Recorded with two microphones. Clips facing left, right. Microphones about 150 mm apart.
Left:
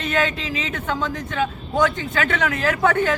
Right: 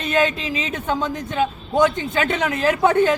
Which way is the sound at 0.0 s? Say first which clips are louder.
Right 3 dB; 15° right (ahead or behind).